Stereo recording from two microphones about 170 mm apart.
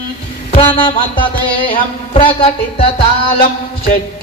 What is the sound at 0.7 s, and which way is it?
Speech, 30° left (ahead or behind).